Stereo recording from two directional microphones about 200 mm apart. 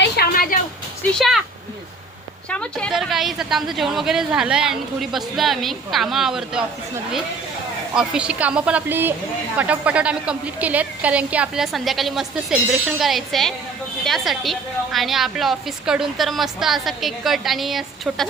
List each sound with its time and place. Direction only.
0.0 s a sound: 50° left (ahead or behind)
2.5 s a woman's voice: 5° left (ahead or behind)
7.9 s a woman's voice: 5° right (ahead or behind)